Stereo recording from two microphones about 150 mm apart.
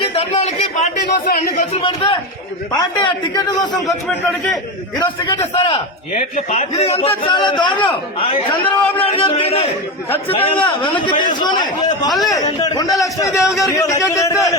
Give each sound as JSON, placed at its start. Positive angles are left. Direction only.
{"t": 0.1, "sound": "a sound", "side_deg": 45}
{"t": 1.1, "sound": "speech", "side_deg": 70}
{"t": 1.7, "sound": "a man's voice", "side_deg": 35}
{"t": 5.5, "sound": "a man's voice", "side_deg": 40}
{"t": 7.2, "sound": "a man's voice", "side_deg": 30}
{"t": 12.0, "sound": "a man's voice", "side_deg": 0}
{"t": 12.6, "sound": "a man's voice", "side_deg": 25}